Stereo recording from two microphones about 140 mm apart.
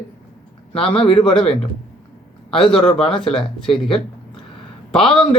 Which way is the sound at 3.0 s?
40° left (ahead or behind).